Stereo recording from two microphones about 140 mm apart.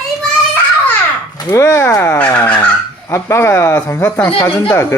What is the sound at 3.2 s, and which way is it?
Fowl, 20° left (ahead or behind).